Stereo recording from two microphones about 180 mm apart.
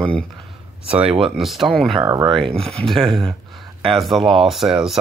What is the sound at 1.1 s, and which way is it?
Speech, 30° right (ahead or behind).